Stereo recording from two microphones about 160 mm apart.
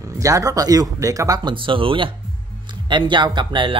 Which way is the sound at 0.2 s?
20° right (ahead or behind).